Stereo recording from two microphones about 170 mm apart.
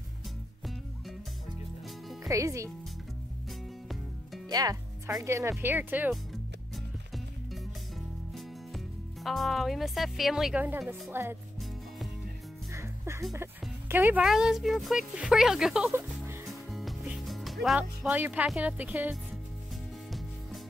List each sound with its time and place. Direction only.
2.2 s speech: 20° right (ahead or behind)
4.5 s speech: 20° right (ahead or behind)
8.4 s speech: centre (ahead or behind)
12.7 s music: 15° right (ahead or behind)
13.3 s speech: 15° right (ahead or behind)
15.9 s music: 15° right (ahead or behind)
16.4 s music: centre (ahead or behind)